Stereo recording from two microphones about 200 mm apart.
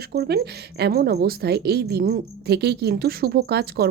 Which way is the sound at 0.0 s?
55° right (ahead or behind).